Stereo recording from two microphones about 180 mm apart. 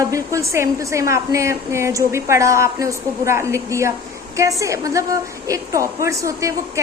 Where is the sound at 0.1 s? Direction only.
15° right (ahead or behind).